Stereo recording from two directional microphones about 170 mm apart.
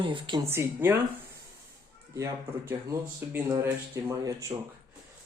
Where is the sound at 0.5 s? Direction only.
15° right (ahead or behind).